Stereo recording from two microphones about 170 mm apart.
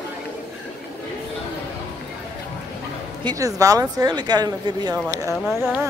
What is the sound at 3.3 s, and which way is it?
Speech, 20° right (ahead or behind).